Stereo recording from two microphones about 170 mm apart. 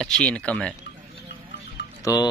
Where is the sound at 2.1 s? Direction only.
20° left (ahead or behind).